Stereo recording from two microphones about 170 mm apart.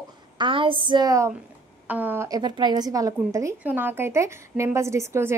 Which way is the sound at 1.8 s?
10° right (ahead or behind).